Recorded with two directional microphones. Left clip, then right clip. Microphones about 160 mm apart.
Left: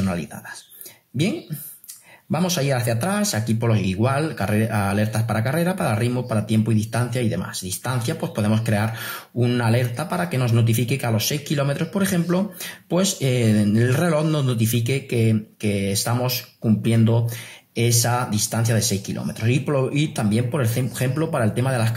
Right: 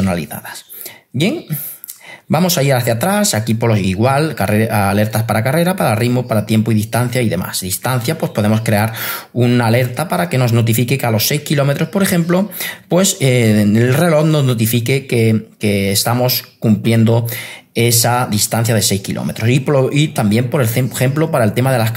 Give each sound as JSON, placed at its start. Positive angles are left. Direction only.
{"t": 0.0, "sound": "speech", "side_deg": -25}
{"t": 2.3, "sound": "speech", "side_deg": -25}